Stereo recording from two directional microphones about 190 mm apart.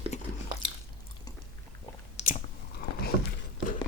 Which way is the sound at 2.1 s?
40° left (ahead or behind).